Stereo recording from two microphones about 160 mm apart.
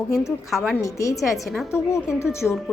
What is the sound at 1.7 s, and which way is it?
Speech, 15° left (ahead or behind).